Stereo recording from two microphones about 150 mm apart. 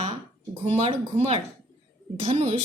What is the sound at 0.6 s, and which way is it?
Speech, 45° right (ahead or behind).